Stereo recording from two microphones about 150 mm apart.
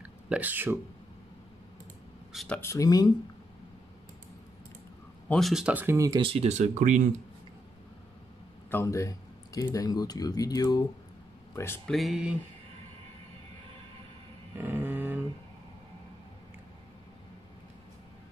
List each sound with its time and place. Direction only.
0.3 s speech: 10° right (ahead or behind)
2.3 s speech: 5° left (ahead or behind)
2.6 s speech: 20° left (ahead or behind)
5.3 s speech: centre (ahead or behind); by 7.2 s 55° right (ahead or behind)
8.6 s speech: 15° left (ahead or behind)
11.9 s speech: centre (ahead or behind)
14.6 s a sound: 15° right (ahead or behind)